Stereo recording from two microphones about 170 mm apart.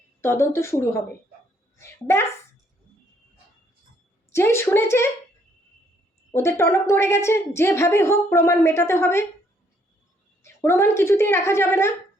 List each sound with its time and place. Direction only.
0.2 s a woman's voice: 15° left (ahead or behind)
4.3 s a woman's voice: 15° left (ahead or behind)
6.3 s a woman's voice: 15° left (ahead or behind)
10.4 s a woman's voice: 15° left (ahead or behind)